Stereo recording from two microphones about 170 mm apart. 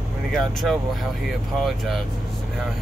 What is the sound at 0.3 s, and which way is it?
Speech, centre (ahead or behind).